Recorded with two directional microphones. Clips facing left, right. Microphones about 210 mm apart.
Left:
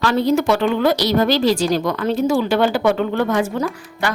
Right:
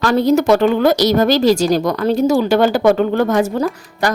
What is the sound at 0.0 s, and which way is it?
A woman's voice, 45° right (ahead or behind).